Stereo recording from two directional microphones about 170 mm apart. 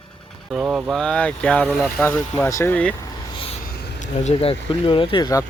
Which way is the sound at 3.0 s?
30° left (ahead or behind).